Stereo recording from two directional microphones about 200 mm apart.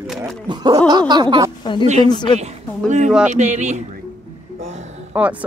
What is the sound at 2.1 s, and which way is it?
Speech, 20° left (ahead or behind).